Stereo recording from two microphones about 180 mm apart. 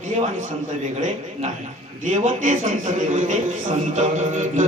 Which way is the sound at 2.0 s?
40° right (ahead or behind).